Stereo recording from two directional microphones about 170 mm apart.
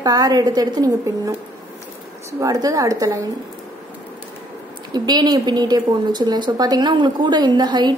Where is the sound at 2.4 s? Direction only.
20° right (ahead or behind).